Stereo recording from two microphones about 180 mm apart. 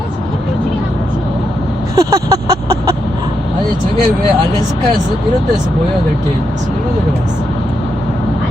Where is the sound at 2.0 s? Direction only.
20° right (ahead or behind).